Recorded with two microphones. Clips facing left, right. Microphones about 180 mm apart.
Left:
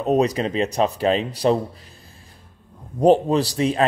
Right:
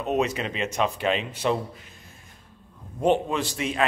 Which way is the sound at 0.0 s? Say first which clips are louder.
Left 6 dB; 35° left (ahead or behind).